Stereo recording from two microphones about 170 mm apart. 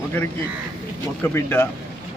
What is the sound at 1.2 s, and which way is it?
Speech, 15° left (ahead or behind).